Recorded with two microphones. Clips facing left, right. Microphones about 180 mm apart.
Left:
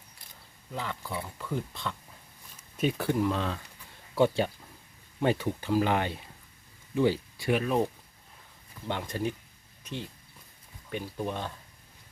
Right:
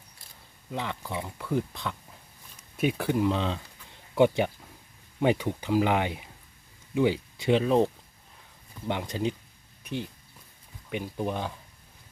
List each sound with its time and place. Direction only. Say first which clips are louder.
0.7 s speech: right 2 dB; 20° right (ahead or behind)
8.9 s speech: right 2 dB; 15° right (ahead or behind)